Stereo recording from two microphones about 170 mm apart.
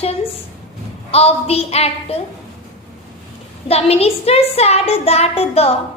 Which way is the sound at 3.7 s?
35° left (ahead or behind).